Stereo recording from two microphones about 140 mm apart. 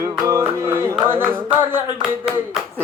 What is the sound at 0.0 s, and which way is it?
Music, 20° right (ahead or behind).